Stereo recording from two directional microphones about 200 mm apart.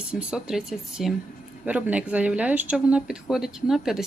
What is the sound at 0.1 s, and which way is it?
Speech, 5° right (ahead or behind).